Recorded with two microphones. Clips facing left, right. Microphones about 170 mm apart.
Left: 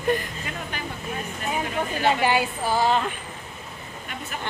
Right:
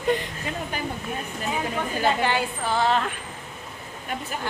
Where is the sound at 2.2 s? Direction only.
10° left (ahead or behind).